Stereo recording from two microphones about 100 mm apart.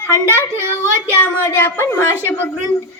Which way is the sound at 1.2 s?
25° left (ahead or behind).